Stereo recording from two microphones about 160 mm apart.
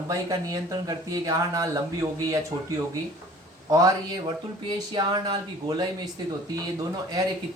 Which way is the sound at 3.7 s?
20° right (ahead or behind).